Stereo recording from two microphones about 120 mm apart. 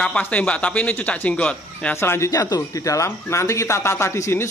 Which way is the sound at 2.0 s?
20° left (ahead or behind).